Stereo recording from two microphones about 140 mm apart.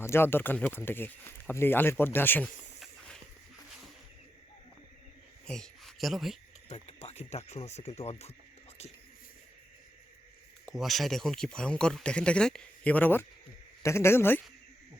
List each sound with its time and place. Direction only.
0.0 s speech: 15° left (ahead or behind)
5.5 s speech: 5° left (ahead or behind)
6.7 s speech: 45° left (ahead or behind)
10.8 s speech: centre (ahead or behind); by 14.4 s 15° left (ahead or behind)